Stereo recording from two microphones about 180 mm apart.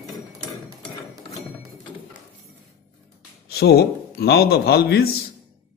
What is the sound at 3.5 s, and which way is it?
A man's voice, 60° left (ahead or behind).